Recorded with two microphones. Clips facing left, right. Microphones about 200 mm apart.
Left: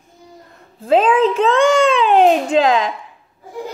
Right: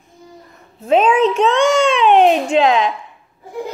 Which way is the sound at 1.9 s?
35° left (ahead or behind).